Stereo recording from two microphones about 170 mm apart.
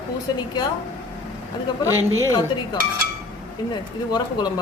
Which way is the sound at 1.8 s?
20° left (ahead or behind).